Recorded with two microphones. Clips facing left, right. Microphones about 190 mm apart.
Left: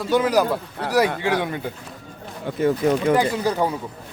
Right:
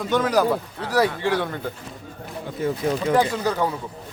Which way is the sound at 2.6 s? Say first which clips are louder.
Left 5 dB; 75° left (ahead or behind).